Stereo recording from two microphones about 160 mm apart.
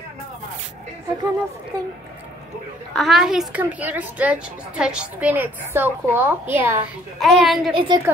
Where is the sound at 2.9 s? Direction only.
Centre (ahead or behind).